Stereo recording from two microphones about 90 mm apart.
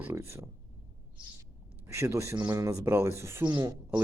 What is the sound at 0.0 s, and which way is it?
Speech, 25° right (ahead or behind).